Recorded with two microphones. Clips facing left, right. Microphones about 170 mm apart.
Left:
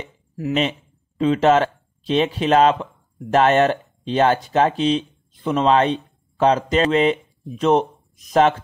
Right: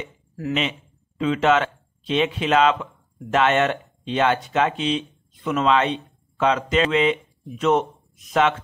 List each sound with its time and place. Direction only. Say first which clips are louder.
0.6 s speech: left 4 dB; 35° left (ahead or behind)